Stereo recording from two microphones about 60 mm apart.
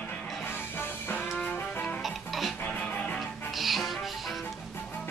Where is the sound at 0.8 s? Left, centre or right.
Left.